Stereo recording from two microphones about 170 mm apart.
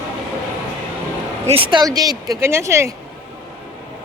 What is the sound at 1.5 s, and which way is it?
Speech, 30° right (ahead or behind).